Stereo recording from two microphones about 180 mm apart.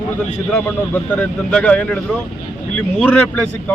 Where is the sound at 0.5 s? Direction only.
10° left (ahead or behind).